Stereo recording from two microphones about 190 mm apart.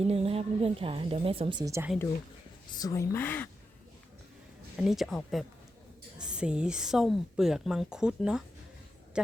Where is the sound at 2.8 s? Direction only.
20° left (ahead or behind).